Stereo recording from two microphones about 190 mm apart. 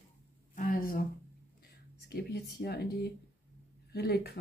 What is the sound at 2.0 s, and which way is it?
Speech, 55° left (ahead or behind).